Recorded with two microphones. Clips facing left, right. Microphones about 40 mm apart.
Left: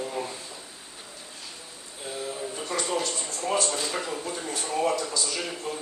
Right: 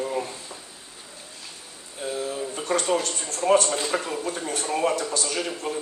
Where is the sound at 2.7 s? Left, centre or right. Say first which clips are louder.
Right 5 dB; right.